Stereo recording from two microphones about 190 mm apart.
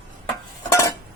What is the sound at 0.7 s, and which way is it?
Dishes, 20° left (ahead or behind).